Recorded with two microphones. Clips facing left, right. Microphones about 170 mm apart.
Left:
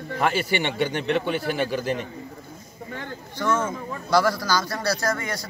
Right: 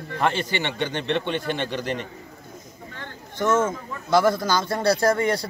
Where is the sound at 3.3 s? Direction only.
20° right (ahead or behind).